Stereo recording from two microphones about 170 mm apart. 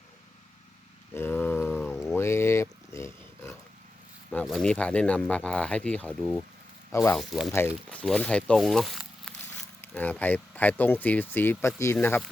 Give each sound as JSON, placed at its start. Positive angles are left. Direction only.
{"t": 1.1, "sound": "a sound", "side_deg": 10}
{"t": 4.3, "sound": "speech", "side_deg": 5}
{"t": 6.9, "sound": "speech", "side_deg": 15}
{"t": 7.2, "sound": "speech", "side_deg": 0}
{"t": 7.5, "sound": "speech", "side_deg": 15}
{"t": 9.8, "sound": "speech", "side_deg": 10}